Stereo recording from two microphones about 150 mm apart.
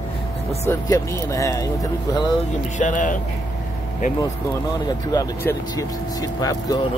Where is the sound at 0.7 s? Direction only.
20° left (ahead or behind).